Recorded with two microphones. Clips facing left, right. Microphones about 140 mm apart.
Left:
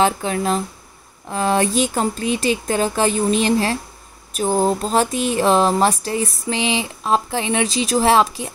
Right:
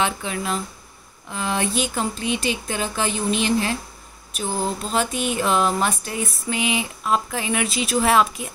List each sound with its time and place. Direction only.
0.0 s speech: 40° left (ahead or behind)